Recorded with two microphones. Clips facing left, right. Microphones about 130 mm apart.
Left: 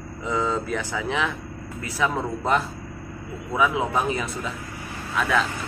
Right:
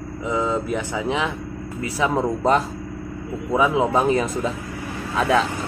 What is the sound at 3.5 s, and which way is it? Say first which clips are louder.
Speech: right 4 dB; 25° right (ahead or behind).